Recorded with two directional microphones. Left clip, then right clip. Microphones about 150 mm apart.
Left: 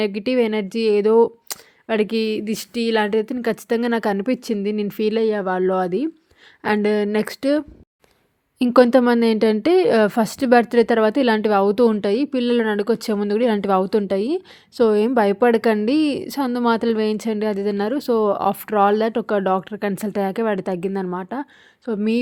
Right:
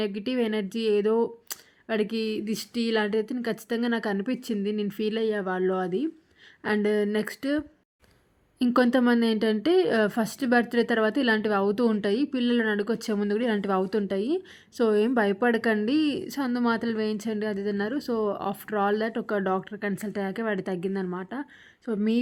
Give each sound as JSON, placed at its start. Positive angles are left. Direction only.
{"t": 0.0, "sound": "a woman's voice", "side_deg": 45}
{"t": 21.8, "sound": "speech", "side_deg": 35}